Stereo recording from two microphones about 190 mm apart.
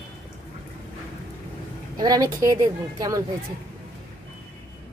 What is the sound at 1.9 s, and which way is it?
Speech, 20° right (ahead or behind).